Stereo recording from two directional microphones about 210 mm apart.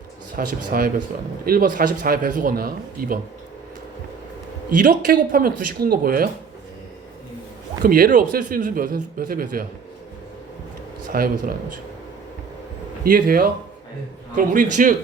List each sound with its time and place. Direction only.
0.3 s a man's voice: 40° right (ahead or behind)
4.8 s a man's voice: 40° right (ahead or behind)
7.8 s a man's voice: 45° right (ahead or behind)
11.1 s a man's voice: 45° right (ahead or behind)
13.1 s a man's voice: 40° right (ahead or behind)